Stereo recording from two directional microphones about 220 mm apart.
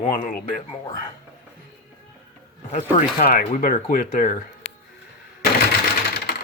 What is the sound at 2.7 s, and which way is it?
Speech, 35° left (ahead or behind).